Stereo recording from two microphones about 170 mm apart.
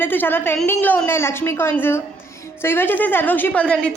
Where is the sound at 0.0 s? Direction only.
10° left (ahead or behind).